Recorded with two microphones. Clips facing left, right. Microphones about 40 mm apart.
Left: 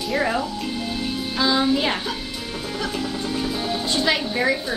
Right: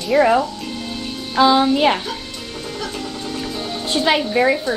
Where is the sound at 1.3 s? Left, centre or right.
Centre.